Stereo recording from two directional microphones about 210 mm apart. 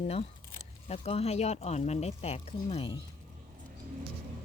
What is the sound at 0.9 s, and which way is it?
Speech, 30° left (ahead or behind).